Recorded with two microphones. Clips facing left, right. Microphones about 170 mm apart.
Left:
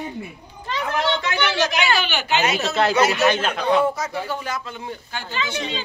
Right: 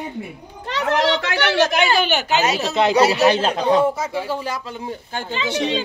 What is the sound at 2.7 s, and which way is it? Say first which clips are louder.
Speech: right 2 dB; 20° right (ahead or behind).